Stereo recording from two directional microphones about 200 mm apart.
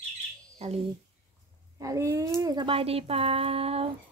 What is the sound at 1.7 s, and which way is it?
Speech, 15° right (ahead or behind).